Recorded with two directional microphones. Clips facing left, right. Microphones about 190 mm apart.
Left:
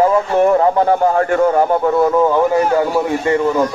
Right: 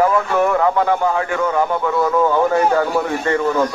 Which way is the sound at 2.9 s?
15° left (ahead or behind).